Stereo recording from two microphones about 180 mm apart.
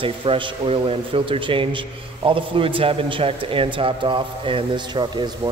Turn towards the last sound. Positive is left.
turn(degrees=-25)  # may be behind; listen again after turning